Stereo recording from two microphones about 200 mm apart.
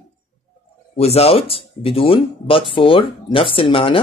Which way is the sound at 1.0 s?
30° left (ahead or behind).